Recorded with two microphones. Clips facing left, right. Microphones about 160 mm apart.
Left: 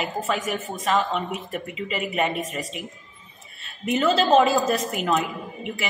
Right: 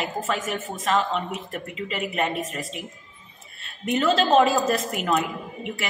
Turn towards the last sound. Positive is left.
turn(degrees=0)  # may be behind; listen again after turning